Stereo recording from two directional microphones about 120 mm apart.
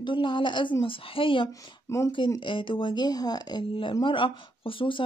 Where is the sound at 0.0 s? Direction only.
40° left (ahead or behind).